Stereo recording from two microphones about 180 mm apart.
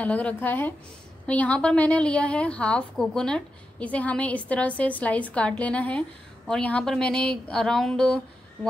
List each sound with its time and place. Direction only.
0.0 s a woman's voice: 10° left (ahead or behind)